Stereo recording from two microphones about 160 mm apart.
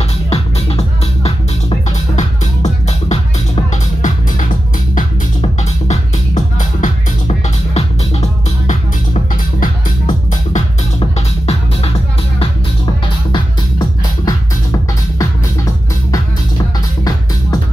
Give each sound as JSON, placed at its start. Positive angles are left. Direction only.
{"t": 0.3, "sound": "music", "side_deg": 40}
{"t": 11.0, "sound": "music", "side_deg": 40}
{"t": 13.3, "sound": "music", "side_deg": 25}